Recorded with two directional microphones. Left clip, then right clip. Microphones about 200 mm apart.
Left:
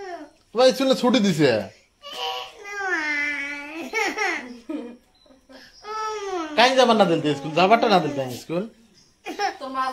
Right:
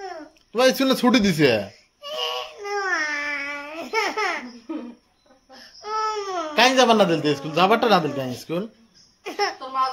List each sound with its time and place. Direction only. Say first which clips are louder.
0.5 s speech: left 1 dB; 15° right (ahead or behind)
2.0 s child singing: right 2 dB; 20° right (ahead or behind)
5.8 s speech: right 4 dB; 20° right (ahead or behind)